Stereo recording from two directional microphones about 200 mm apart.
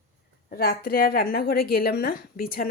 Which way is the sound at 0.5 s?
50° left (ahead or behind).